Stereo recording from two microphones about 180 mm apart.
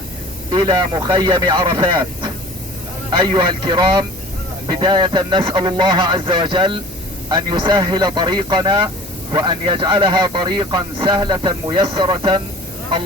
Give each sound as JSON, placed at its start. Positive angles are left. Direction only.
{"t": 0.5, "sound": "speech", "side_deg": -25}